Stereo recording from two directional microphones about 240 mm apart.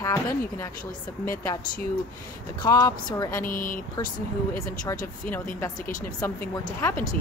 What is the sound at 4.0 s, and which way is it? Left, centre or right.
Speech, centre.